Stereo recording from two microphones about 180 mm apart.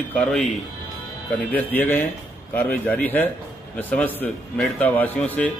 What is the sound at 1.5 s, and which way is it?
A man's voice, 10° left (ahead or behind).